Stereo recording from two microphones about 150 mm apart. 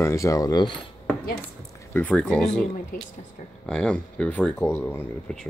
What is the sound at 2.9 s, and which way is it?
Speech, 65° left (ahead or behind).